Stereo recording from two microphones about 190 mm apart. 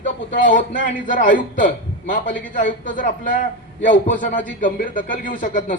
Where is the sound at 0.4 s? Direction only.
45° left (ahead or behind).